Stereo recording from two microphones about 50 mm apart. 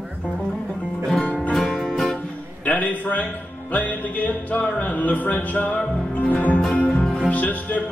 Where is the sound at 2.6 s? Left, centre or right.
Left.